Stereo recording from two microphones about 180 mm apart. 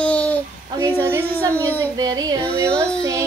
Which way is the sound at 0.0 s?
5° left (ahead or behind).